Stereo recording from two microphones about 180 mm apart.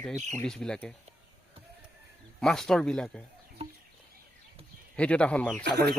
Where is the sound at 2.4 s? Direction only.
5° left (ahead or behind).